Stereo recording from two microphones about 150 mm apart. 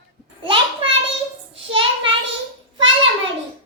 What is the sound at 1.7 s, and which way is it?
Child singing, 35° right (ahead or behind).